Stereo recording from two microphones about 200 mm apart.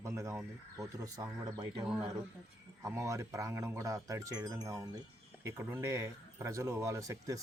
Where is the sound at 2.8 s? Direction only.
15° right (ahead or behind).